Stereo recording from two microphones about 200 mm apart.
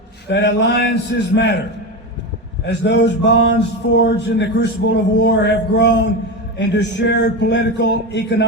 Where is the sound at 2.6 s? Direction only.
60° left (ahead or behind).